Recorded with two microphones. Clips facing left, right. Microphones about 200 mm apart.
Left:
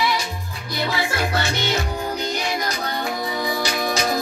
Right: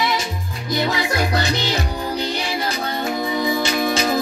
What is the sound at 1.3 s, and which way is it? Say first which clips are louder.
Music: right 2 dB; 35° right (ahead or behind).